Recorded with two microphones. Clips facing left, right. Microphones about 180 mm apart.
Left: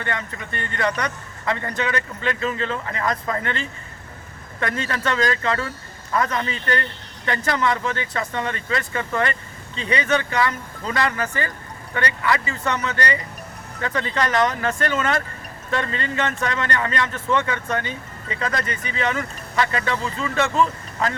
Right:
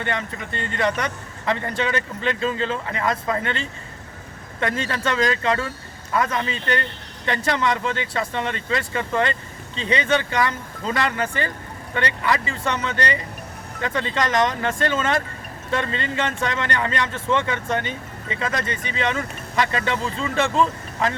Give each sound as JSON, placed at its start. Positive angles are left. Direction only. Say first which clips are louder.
{"t": 0.0, "sound": "speech", "louder": "right 2 dB", "side_deg": -20}